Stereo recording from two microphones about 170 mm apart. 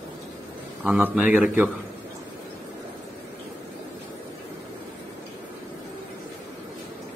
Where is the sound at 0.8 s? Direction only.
5° right (ahead or behind).